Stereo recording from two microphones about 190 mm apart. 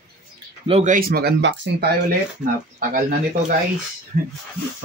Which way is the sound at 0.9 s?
55° right (ahead or behind).